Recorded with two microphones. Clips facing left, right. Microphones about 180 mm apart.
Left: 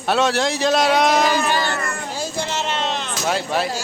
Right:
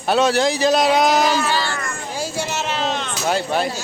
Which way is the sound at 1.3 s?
15° left (ahead or behind).